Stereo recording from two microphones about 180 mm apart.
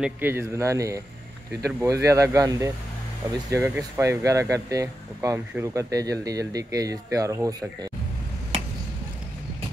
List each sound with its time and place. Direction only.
0.0 s speech: 10° right (ahead or behind)